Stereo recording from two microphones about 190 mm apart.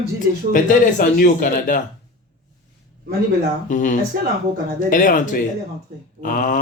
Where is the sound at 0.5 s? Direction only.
45° left (ahead or behind).